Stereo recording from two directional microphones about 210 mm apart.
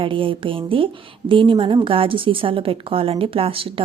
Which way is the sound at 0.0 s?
25° right (ahead or behind).